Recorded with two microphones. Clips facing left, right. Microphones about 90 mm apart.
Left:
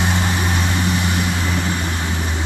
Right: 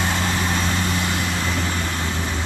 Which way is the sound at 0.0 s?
15° left (ahead or behind).